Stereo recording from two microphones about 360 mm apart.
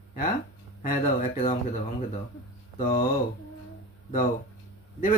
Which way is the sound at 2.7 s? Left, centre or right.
Left.